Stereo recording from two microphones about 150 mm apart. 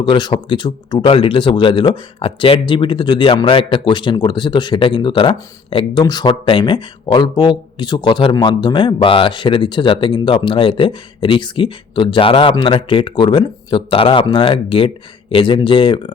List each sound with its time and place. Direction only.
0.0 s speech: 30° left (ahead or behind)